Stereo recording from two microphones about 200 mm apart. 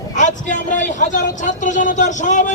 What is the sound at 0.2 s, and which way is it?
A man's voice, 40° left (ahead or behind).